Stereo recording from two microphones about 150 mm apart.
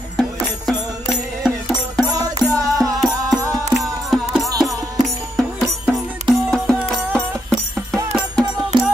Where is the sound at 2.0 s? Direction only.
25° right (ahead or behind).